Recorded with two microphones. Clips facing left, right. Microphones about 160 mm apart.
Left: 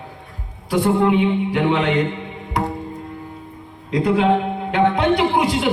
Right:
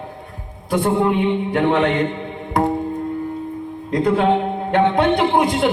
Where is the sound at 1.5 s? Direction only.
45° right (ahead or behind).